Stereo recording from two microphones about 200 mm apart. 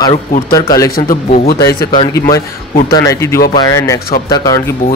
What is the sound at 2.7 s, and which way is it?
Speech, 45° left (ahead or behind).